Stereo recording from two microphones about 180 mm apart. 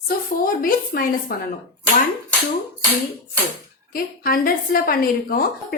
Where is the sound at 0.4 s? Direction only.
50° left (ahead or behind).